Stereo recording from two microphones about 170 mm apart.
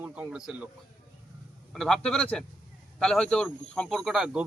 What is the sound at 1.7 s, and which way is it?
Speech, centre (ahead or behind).